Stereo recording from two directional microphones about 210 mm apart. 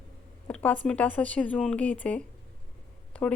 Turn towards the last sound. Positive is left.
turn(degrees=5)  # may be behind; listen again after turning